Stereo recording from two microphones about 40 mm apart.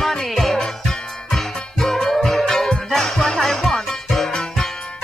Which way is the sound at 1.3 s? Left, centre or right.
Centre.